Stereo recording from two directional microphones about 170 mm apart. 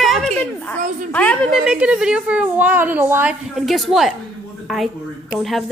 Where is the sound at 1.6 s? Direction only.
5° right (ahead or behind).